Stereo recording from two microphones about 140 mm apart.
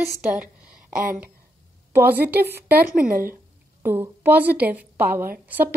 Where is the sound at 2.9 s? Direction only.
85° right.